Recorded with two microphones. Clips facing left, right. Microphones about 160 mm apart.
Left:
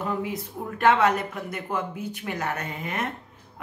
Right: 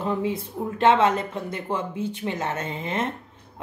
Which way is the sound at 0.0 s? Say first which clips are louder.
Right 3 dB; 30° right (ahead or behind).